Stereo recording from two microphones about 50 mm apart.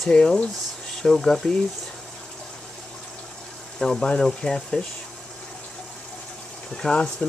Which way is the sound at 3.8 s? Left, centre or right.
Centre.